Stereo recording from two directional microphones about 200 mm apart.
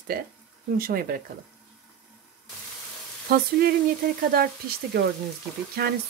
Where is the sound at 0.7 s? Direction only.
45° right (ahead or behind).